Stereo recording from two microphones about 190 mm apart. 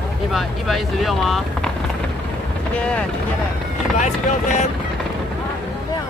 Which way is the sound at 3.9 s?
40° left (ahead or behind).